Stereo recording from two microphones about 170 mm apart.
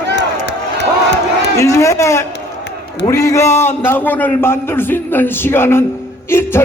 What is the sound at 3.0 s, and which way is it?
A man's voice, 15° left (ahead or behind).